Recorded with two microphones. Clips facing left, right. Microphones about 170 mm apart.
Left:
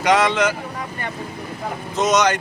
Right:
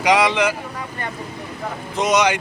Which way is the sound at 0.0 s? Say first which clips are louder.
Even; 10° right (ahead or behind).